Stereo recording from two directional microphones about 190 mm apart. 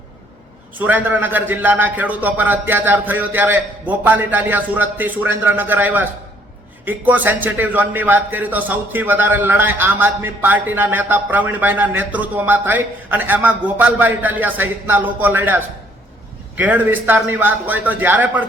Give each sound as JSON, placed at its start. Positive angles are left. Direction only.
{"t": 0.8, "sound": "a man's voice", "side_deg": -10}